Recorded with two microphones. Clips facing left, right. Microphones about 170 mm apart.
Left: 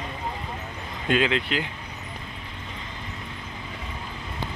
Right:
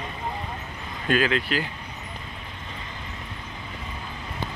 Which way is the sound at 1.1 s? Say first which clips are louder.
Even; 20° left (ahead or behind).